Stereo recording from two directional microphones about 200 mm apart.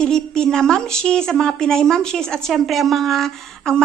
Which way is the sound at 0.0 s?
5° left (ahead or behind).